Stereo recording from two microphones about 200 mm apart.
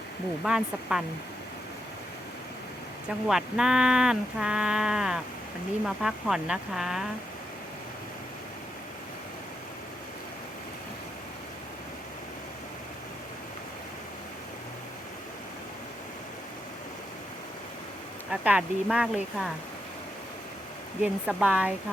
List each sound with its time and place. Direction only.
0.4 s speech: 5° right (ahead or behind)
3.2 s speech: centre (ahead or behind)
18.3 s speech: 5° right (ahead or behind)
21.0 s speech: 5° right (ahead or behind)